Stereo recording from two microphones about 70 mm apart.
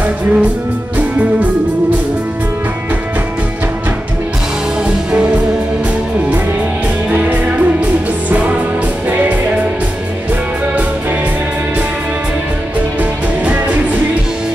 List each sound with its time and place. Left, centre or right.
0.0 s music: centre
7.1 s music: right
13.4 s music: right